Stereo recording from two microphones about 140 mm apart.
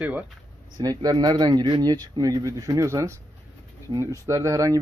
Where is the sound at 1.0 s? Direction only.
25° right (ahead or behind).